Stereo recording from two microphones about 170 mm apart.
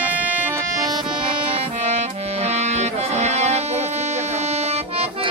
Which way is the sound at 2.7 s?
40° right (ahead or behind).